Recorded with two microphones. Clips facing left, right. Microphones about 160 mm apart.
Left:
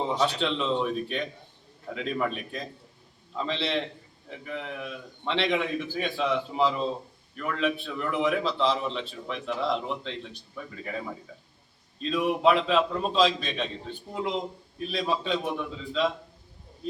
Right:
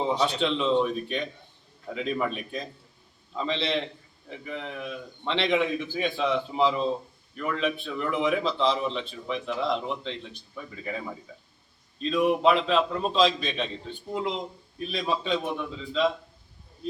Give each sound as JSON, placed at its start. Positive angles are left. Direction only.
{"t": 0.2, "sound": "a man's voice", "side_deg": 0}